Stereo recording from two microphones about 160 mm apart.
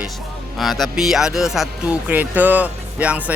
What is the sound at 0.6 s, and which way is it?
Speech, centre (ahead or behind).